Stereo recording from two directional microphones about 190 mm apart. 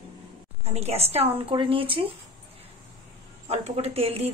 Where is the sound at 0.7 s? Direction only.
35° right (ahead or behind).